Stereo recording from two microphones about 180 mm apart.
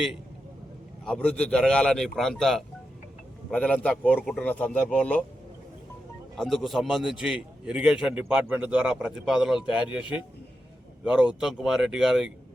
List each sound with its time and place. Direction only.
1.0 s a man's voice: 5° left (ahead or behind)
6.3 s a man's voice: centre (ahead or behind)
10.0 s a man's voice: 25° left (ahead or behind)
11.0 s a man's voice: 5° right (ahead or behind)